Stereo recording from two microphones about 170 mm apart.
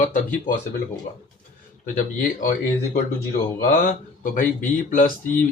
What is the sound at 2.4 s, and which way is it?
Speech, 50° left (ahead or behind).